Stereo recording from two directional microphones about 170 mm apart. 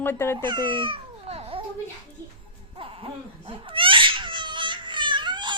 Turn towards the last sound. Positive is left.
turn(degrees=-25)  # may be behind; listen again after turning